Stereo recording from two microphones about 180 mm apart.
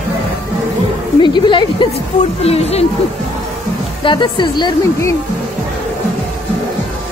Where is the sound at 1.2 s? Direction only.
25° left (ahead or behind).